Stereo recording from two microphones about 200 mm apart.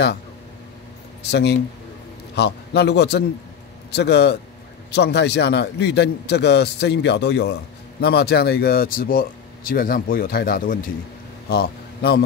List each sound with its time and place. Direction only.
1.3 s a man's voice: 55° left (ahead or behind)